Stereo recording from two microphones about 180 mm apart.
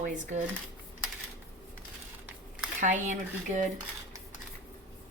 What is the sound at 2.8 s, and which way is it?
Speech, 45° right (ahead or behind).